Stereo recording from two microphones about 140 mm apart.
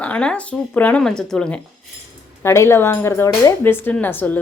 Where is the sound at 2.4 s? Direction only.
20° left (ahead or behind).